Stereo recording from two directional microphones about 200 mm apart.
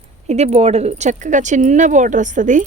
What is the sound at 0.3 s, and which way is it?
Speech, 35° right (ahead or behind).